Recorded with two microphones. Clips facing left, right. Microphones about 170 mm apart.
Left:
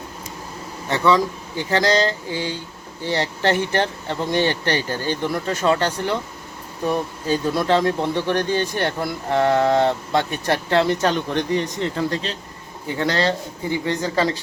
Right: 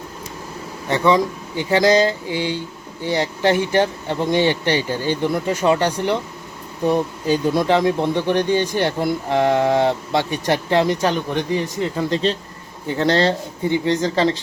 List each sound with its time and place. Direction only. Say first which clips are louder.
0.9 s speech: right 1 dB; 15° right (ahead or behind)
13.0 s speech: right 4 dB; 30° right (ahead or behind)